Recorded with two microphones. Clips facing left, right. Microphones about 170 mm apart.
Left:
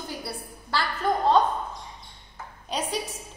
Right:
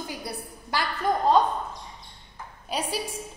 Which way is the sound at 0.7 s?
15° right (ahead or behind).